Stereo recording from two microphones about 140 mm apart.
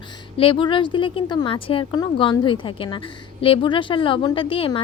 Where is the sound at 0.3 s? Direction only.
40° left (ahead or behind).